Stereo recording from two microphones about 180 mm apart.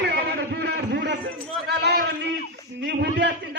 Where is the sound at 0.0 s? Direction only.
70° right (ahead or behind).